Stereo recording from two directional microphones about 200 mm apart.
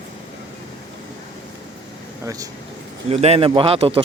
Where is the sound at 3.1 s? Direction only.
30° right (ahead or behind).